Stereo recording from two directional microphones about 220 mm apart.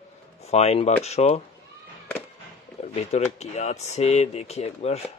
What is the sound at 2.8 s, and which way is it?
Speech, 30° left (ahead or behind).